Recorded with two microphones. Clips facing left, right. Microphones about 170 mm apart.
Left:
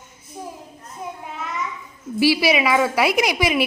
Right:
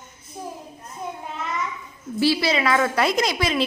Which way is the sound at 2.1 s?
10° left (ahead or behind).